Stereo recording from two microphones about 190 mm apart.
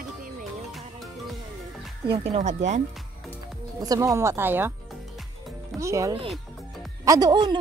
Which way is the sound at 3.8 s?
20° right (ahead or behind).